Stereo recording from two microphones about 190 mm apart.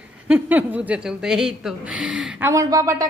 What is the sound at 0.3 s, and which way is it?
A woman's voice, 10° right (ahead or behind).